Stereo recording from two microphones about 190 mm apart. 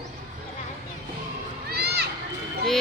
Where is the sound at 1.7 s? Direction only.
55° right (ahead or behind).